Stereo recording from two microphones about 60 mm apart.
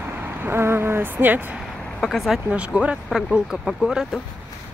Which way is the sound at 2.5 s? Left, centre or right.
Right.